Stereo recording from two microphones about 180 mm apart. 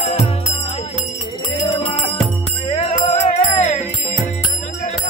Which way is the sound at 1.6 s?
30° left (ahead or behind).